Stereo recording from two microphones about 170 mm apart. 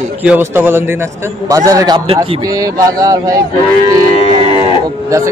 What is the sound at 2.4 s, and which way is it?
A man's voice, 20° right (ahead or behind).